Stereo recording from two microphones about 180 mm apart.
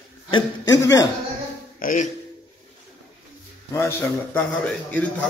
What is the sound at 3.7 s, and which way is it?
Speech, 15° left (ahead or behind).